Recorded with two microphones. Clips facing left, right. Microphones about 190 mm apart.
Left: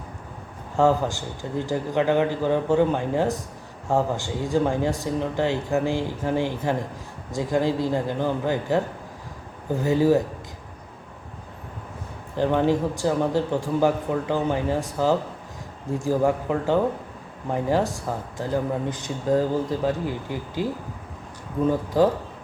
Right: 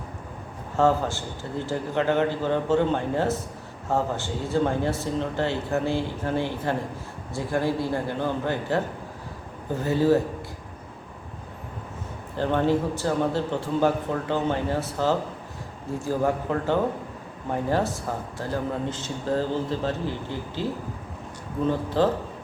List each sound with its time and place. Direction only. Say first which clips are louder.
0.8 s speech: left 2 dB; 15° left (ahead or behind)
12.4 s speech: left 2 dB; 15° left (ahead or behind)
21.7 s speech: left 3 dB; 10° left (ahead or behind)